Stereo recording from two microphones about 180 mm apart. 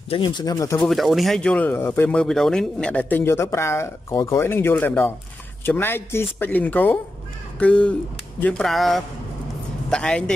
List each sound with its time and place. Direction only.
0.1 s speech: 25° left (ahead or behind)
0.8 s speech: centre (ahead or behind)